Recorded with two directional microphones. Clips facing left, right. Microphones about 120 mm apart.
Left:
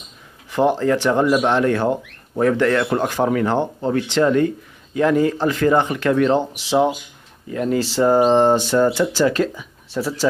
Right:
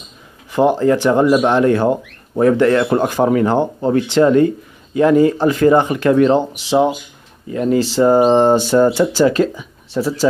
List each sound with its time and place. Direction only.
0.5 s speech: 10° right (ahead or behind)
6.5 s speech: centre (ahead or behind)
8.1 s speech: 15° right (ahead or behind)